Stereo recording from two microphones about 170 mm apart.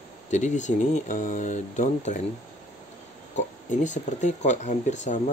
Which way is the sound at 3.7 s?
45° left (ahead or behind).